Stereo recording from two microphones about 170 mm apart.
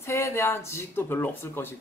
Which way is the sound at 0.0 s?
15° left (ahead or behind).